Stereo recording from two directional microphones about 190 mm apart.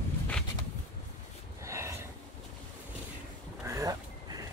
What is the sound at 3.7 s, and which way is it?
Vehicle, 20° right (ahead or behind).